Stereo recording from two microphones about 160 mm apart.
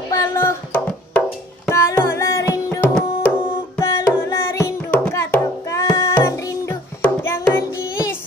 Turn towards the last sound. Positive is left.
turn(degrees=15)  # may be behind; listen again after turning